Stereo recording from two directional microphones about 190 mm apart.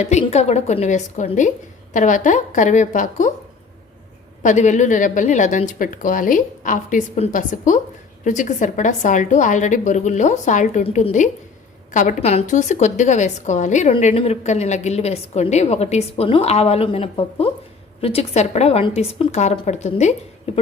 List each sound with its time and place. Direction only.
0.0 s a woman's voice: 35° left (ahead or behind)
4.4 s a woman's voice: 40° left (ahead or behind)